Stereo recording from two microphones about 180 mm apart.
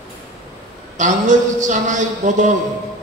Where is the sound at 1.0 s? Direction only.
45° right (ahead or behind).